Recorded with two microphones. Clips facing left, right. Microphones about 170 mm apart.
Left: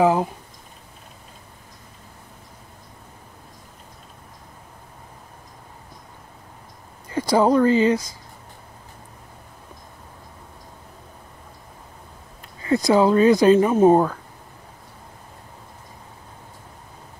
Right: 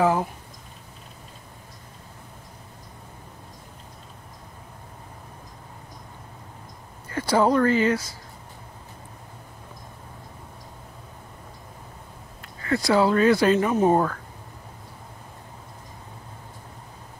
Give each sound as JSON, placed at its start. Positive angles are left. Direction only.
{"t": 0.0, "sound": "speech", "side_deg": 15}
{"t": 7.1, "sound": "speech", "side_deg": 15}
{"t": 12.6, "sound": "speech", "side_deg": 20}